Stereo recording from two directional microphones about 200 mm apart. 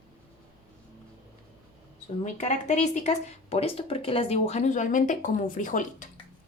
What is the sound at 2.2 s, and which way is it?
Speech, 35° left (ahead or behind).